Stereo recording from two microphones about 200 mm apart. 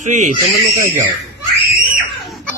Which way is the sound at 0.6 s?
60° right (ahead or behind).